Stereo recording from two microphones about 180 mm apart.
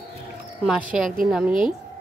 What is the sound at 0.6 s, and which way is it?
A woman's voice, 5° right (ahead or behind).